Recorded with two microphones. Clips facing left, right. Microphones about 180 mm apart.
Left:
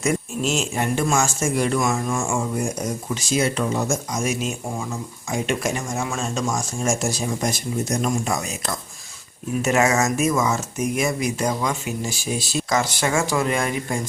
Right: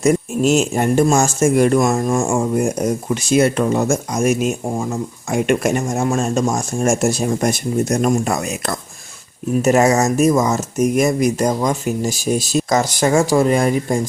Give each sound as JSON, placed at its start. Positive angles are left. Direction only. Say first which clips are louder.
{"t": 0.0, "sound": "speech", "louder": "right 8 dB", "side_deg": -45}
{"t": 1.5, "sound": "speech", "louder": "right 9 dB", "side_deg": -50}
{"t": 9.6, "sound": "speech", "louder": "right 6 dB", "side_deg": -40}